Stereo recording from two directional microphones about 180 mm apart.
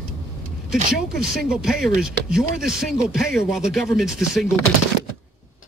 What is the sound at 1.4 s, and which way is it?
Speech, 5° right (ahead or behind).